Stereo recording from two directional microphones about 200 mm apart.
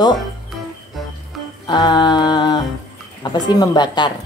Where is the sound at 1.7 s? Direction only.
20° left (ahead or behind).